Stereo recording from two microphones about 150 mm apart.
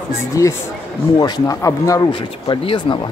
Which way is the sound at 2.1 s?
35° left (ahead or behind).